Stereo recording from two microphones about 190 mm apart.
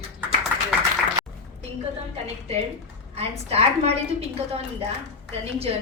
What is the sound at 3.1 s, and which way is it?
A woman's voice, 35° right (ahead or behind).